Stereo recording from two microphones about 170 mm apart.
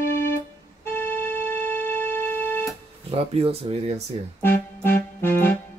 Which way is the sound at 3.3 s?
35° right (ahead or behind).